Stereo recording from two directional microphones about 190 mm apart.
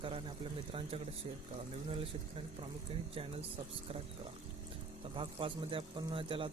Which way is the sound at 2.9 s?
30° right (ahead or behind).